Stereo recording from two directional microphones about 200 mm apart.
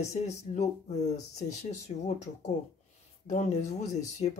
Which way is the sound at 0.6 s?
35° left (ahead or behind).